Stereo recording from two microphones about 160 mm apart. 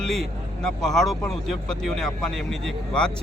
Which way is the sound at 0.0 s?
Centre (ahead or behind).